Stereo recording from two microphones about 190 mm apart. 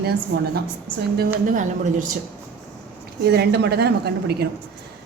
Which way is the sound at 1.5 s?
40° right (ahead or behind).